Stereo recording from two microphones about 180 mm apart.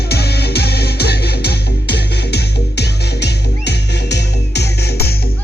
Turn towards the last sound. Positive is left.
turn(degrees=70)  # may be behind; listen again after turning